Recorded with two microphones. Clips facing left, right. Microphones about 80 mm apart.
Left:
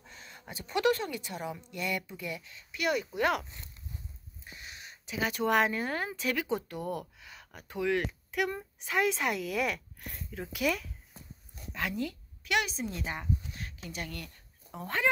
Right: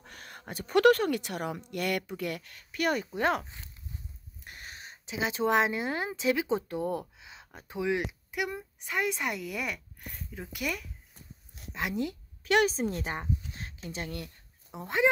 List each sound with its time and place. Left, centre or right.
0.0 s a woman's voice: right
3.1 s speech: right
4.5 s a sound: right
5.1 s speech: right; by 10.9 s centre
11.7 s a woman's voice: right
13.5 s a sound: right
13.8 s speech: right